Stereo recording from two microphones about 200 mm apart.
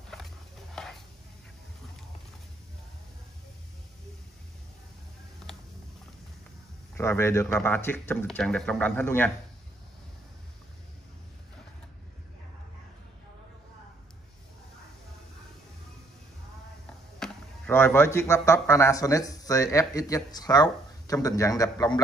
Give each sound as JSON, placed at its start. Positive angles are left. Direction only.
{"t": 0.1, "sound": "a sound", "side_deg": 0}
{"t": 0.8, "sound": "chopping", "side_deg": 5}
{"t": 7.0, "sound": "a man's voice", "side_deg": 10}
{"t": 17.2, "sound": "speech", "side_deg": 10}